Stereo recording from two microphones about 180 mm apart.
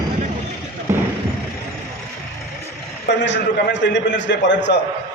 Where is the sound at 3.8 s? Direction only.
85° left.